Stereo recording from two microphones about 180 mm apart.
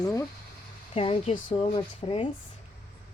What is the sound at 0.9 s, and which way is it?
Speech, 30° left (ahead or behind).